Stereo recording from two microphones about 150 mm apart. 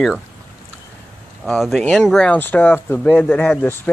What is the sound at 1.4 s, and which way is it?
Speech, centre (ahead or behind).